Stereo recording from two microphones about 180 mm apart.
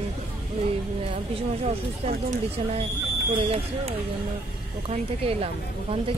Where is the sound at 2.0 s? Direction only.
35° right (ahead or behind).